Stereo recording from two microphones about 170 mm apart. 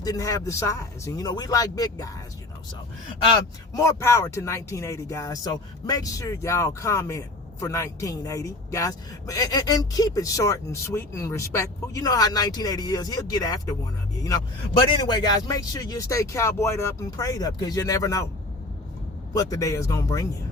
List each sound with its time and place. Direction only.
0.0 s speech: 20° left (ahead or behind)
3.8 s speech: 20° left (ahead or behind)
19.3 s speech: 20° left (ahead or behind)